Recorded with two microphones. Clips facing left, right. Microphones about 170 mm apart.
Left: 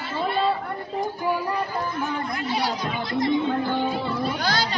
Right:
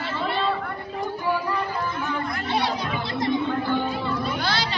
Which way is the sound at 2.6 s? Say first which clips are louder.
Even; 25° right (ahead or behind).